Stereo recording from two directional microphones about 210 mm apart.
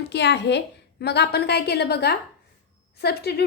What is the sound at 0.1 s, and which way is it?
A woman's voice, 55° left (ahead or behind).